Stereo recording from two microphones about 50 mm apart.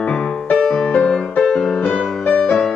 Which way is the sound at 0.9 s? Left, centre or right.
Left.